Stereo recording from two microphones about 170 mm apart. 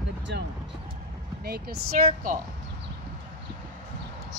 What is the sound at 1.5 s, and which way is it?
Speech, 65° right (ahead or behind).